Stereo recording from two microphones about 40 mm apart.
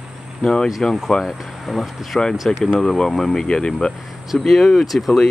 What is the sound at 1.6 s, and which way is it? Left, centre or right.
Speech, centre.